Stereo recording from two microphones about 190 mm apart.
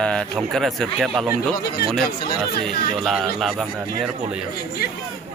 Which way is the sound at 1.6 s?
55° left (ahead or behind).